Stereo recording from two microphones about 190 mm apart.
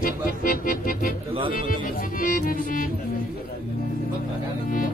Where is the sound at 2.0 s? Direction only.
45° left (ahead or behind).